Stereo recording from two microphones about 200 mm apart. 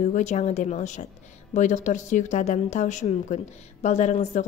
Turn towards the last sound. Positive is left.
turn(degrees=35)  # may be behind; listen again after turning